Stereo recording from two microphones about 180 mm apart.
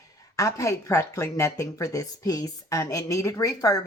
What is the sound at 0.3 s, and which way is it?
Speech, 20° left (ahead or behind).